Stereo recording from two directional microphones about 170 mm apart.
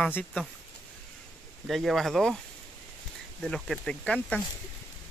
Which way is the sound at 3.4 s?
Centre (ahead or behind).